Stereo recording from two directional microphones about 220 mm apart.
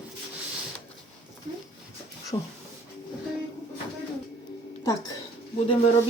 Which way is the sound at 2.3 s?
20° left (ahead or behind).